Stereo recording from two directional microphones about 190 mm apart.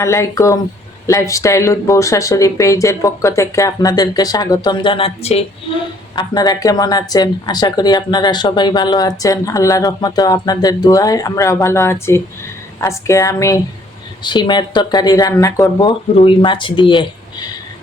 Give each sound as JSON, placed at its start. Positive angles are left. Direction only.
{"t": 0.0, "sound": "a woman's voice", "side_deg": 15}